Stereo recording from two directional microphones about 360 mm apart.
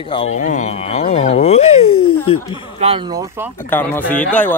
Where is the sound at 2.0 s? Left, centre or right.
Left.